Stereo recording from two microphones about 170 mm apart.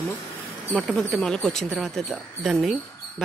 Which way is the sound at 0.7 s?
5° left (ahead or behind).